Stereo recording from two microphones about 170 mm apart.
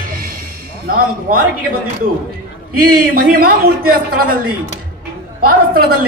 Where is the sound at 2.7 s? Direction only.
60° right (ahead or behind).